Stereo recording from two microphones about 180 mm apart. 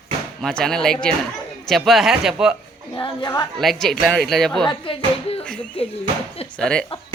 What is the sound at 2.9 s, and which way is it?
Speech, 25° left (ahead or behind).